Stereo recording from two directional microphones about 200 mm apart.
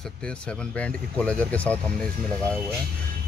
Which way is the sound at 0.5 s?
5° left (ahead or behind).